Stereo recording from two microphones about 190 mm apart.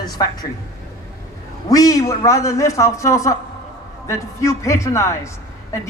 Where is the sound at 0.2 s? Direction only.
20° left (ahead or behind).